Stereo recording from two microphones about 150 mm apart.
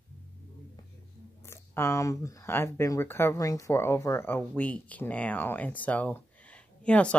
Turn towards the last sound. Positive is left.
turn(degrees=5)  # may be behind; listen again after turning